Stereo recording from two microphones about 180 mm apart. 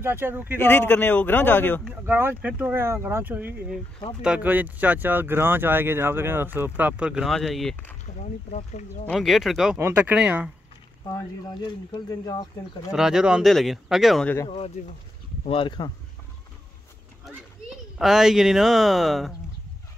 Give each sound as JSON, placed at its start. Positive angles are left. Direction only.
{"t": 0.0, "sound": "speech", "side_deg": -10}
{"t": 0.6, "sound": "a man's voice", "side_deg": 10}
{"t": 1.9, "sound": "speech", "side_deg": -10}
{"t": 8.2, "sound": "speech", "side_deg": 40}
{"t": 9.0, "sound": "speech", "side_deg": 0}
{"t": 9.8, "sound": "speech", "side_deg": -15}
{"t": 11.6, "sound": "speech", "side_deg": 25}
{"t": 12.9, "sound": "speech", "side_deg": -5}
{"t": 14.8, "sound": "speech", "side_deg": 45}
{"t": 15.4, "sound": "speech", "side_deg": 30}
{"t": 17.9, "sound": "speech", "side_deg": 0}